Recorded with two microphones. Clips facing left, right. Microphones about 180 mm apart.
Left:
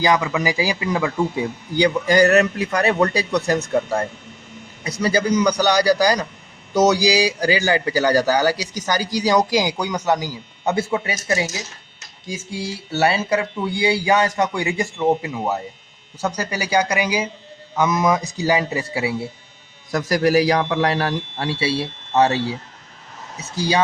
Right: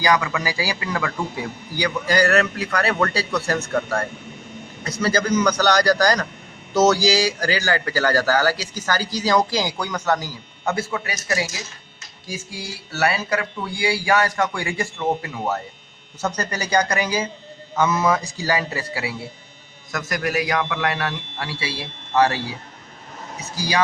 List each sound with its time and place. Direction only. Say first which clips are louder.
0.0 s a man's voice: left 2 dB; 20° left (ahead or behind)
23.6 s a man's voice: left 3 dB; 25° left (ahead or behind)